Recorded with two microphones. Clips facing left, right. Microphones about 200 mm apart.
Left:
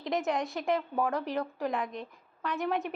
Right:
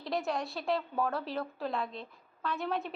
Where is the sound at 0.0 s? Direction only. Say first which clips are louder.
Left 3 dB; 20° left (ahead or behind).